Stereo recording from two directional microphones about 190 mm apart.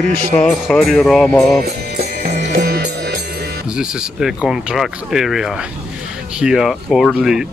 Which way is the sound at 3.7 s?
5° right (ahead or behind).